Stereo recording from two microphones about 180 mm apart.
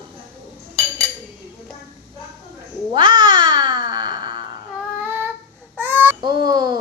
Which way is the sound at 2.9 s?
25° right (ahead or behind).